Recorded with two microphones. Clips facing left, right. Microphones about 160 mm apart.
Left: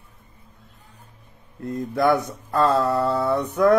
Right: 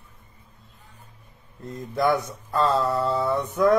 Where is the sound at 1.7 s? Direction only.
60° left (ahead or behind).